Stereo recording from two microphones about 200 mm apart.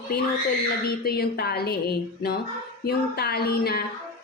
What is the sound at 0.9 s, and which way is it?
A woman's voice, 50° left (ahead or behind).